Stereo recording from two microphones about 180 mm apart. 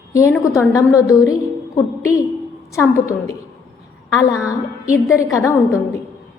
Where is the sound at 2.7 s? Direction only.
15° left (ahead or behind).